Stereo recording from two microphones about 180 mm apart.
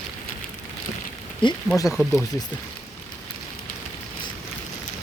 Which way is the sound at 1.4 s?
25° left (ahead or behind).